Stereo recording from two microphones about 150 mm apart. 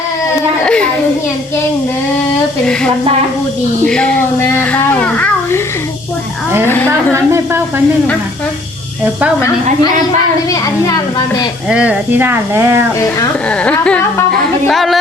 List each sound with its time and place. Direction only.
0.6 s children playing: 5° left (ahead or behind)
3.8 s a child's voice: 5° left (ahead or behind)
7.1 s speech: 15° right (ahead or behind)
10.5 s a woman's voice: 25° left (ahead or behind)
11.7 s speech: 10° right (ahead or behind)
13.5 s a child's voice: 10° left (ahead or behind)
14.7 s a sound: centre (ahead or behind)